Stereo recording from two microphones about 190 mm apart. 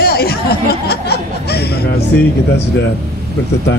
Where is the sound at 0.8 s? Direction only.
60° left (ahead or behind).